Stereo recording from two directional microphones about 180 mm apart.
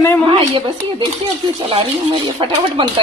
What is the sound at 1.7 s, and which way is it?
Speech, 30° right (ahead or behind).